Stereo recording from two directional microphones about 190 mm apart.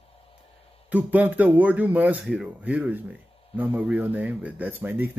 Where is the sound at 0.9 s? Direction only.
10° right (ahead or behind).